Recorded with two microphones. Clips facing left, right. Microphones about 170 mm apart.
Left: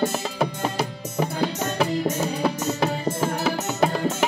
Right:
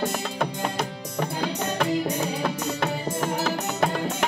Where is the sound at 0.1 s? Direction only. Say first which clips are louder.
Left 2 dB; 5° left (ahead or behind).